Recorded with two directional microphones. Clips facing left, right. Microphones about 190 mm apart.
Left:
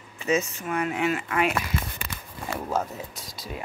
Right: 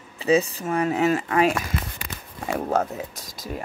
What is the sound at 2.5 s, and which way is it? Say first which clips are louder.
Speech: right 5 dB; 60° right (ahead or behind).